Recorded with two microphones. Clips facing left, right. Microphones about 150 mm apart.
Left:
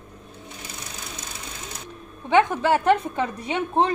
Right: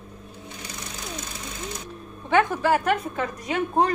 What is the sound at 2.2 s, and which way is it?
A woman's voice, 20° left (ahead or behind).